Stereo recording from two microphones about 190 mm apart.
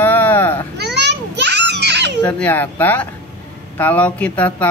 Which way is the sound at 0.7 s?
60° right (ahead or behind).